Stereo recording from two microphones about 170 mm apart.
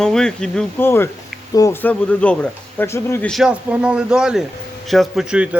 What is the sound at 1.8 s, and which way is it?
Speech, 5° left (ahead or behind).